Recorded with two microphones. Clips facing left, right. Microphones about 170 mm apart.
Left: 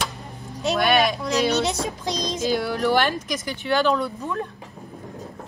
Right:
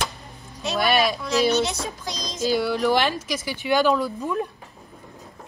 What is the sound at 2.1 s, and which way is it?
Music, 60° left (ahead or behind).